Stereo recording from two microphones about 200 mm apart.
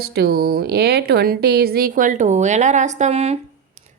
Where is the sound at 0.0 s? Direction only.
55° right (ahead or behind).